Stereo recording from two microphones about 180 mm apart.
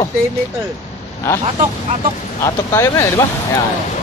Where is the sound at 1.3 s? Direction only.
15° left (ahead or behind).